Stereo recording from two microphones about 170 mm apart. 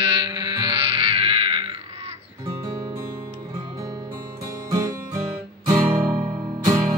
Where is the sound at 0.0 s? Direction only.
25° right (ahead or behind).